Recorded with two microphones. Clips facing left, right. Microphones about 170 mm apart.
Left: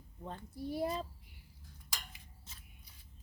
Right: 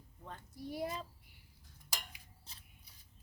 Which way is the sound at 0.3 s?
30° left (ahead or behind).